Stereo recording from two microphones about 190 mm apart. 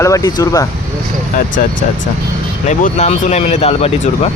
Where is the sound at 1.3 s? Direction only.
45° left (ahead or behind).